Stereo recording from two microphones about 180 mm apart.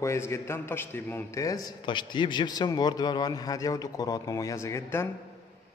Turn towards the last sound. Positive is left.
turn(degrees=15)  # may be behind; listen again after turning